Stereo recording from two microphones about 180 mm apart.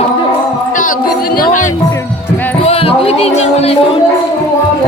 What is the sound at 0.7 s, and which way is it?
Music, 50° left (ahead or behind).